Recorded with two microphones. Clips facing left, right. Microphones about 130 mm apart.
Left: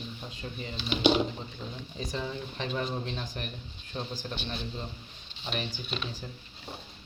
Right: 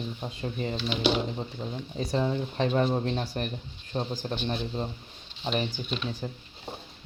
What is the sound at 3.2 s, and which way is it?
A man's voice, 35° right (ahead or behind).